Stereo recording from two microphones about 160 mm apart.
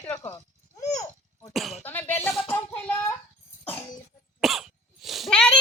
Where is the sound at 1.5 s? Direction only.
Centre (ahead or behind).